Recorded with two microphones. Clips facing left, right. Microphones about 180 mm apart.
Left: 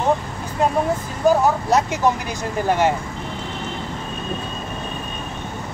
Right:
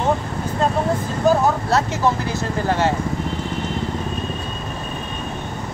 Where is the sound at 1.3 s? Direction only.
15° left (ahead or behind).